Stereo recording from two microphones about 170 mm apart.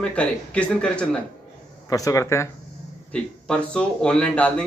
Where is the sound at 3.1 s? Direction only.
5° left (ahead or behind).